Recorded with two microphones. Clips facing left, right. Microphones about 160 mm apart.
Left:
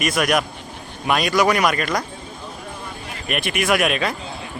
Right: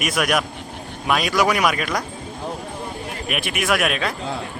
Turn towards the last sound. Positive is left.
turn(degrees=0)  # may be behind; listen again after turning